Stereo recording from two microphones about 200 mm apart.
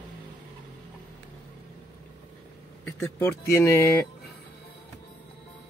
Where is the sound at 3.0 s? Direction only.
15° left (ahead or behind).